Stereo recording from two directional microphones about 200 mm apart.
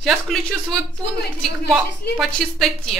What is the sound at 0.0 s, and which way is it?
A woman's voice, centre (ahead or behind).